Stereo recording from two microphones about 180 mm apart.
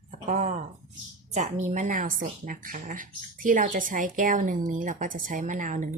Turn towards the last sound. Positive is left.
turn(degrees=-45)  # may be behind; listen again after turning